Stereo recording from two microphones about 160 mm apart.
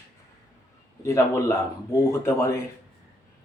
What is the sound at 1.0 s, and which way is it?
Speech, 15° left (ahead or behind).